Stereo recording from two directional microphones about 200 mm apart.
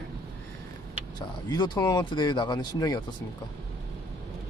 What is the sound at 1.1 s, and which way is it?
Speech, 20° left (ahead or behind).